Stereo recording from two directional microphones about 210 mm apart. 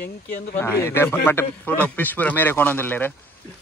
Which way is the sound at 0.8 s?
10° left (ahead or behind).